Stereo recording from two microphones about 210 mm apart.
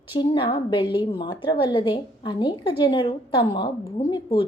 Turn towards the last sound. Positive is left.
turn(degrees=25)  # may be behind; listen again after turning